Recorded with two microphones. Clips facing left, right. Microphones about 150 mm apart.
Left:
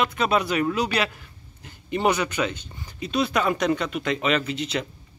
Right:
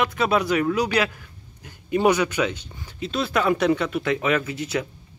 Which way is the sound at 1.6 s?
5° right (ahead or behind).